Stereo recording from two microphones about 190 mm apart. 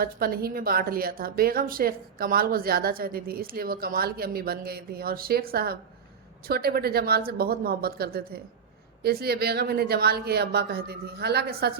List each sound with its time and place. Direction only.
0.0 s a woman's voice: 50° right (ahead or behind)